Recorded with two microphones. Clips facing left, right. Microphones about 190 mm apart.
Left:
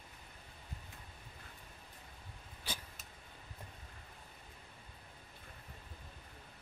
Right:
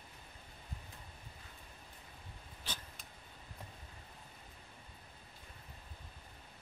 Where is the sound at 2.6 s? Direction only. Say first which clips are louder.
Left 2 dB; 10° left (ahead or behind).